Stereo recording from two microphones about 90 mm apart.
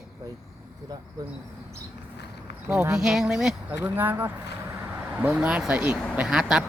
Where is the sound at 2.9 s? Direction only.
5° right (ahead or behind).